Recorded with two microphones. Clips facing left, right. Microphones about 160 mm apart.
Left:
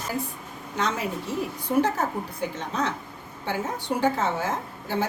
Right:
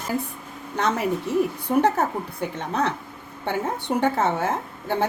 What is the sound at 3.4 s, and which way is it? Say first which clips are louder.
A woman's voice: right 3 dB; 55° right (ahead or behind).